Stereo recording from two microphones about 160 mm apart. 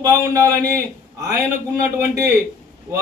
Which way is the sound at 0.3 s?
20° right (ahead or behind).